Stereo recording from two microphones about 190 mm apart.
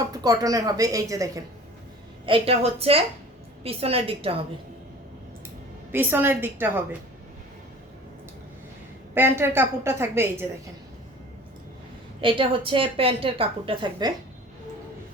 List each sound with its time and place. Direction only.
0.1 s a woman's voice: 20° right (ahead or behind)
2.2 s a woman's voice: 30° right (ahead or behind)
5.9 s a woman's voice: 10° right (ahead or behind)
9.1 s a woman's voice: 10° right (ahead or behind)
12.2 s a woman's voice: 25° right (ahead or behind)